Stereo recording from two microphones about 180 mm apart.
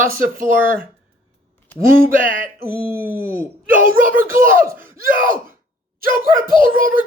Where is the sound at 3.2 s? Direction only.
15° right (ahead or behind).